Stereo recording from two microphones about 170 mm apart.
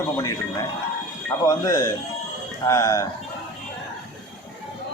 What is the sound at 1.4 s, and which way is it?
A man's voice, 20° left (ahead or behind).